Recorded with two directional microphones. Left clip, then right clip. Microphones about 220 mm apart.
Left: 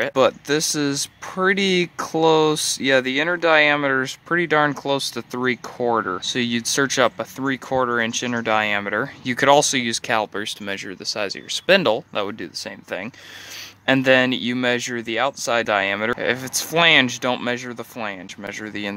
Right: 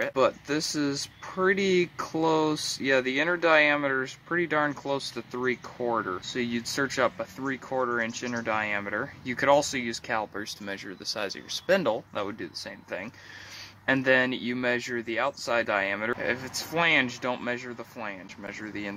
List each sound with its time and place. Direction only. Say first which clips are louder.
0.0 s speech: left 7 dB; 45° left (ahead or behind)